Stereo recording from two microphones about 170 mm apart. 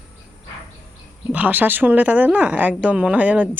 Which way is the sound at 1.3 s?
10° right (ahead or behind).